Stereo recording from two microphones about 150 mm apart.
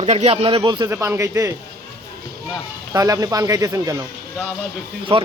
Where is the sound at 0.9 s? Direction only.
15° right (ahead or behind).